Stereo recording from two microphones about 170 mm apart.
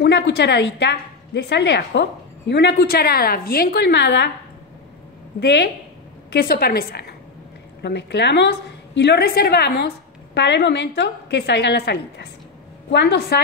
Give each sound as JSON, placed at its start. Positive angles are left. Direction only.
{"t": 0.0, "sound": "a woman's voice", "side_deg": 85}
{"t": 5.4, "sound": "a woman's voice", "side_deg": 90}
{"t": 6.3, "sound": "a woman's voice", "side_deg": 65}
{"t": 7.8, "sound": "a woman's voice", "side_deg": 90}